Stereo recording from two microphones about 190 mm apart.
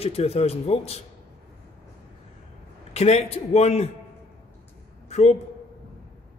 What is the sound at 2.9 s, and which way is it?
Speech, 35° left (ahead or behind).